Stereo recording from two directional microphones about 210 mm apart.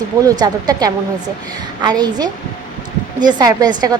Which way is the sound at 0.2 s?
15° right (ahead or behind).